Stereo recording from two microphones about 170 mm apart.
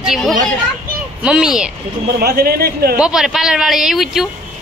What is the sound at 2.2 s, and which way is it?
Speech, 65° right (ahead or behind).